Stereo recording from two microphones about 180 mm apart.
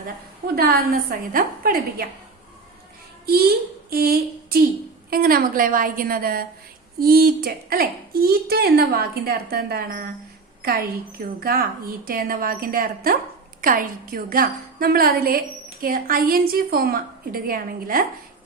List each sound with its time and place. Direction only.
0.5 s a woman's voice: 55° right (ahead or behind)
3.2 s a woman's voice: 60° right (ahead or behind)